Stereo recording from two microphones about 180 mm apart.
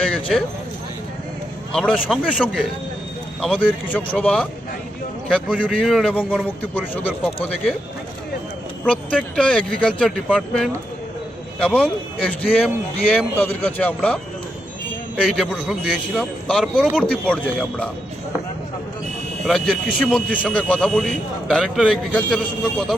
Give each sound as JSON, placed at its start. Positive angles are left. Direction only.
{"t": 0.0, "sound": "a sound", "side_deg": 5}
{"t": 1.7, "sound": "a man's voice", "side_deg": 5}
{"t": 8.8, "sound": "a man's voice", "side_deg": 5}
{"t": 15.2, "sound": "a man's voice", "side_deg": 0}
{"t": 19.5, "sound": "a man's voice", "side_deg": 0}